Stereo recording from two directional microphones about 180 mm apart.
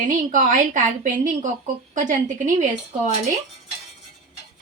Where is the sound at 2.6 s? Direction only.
45° right (ahead or behind).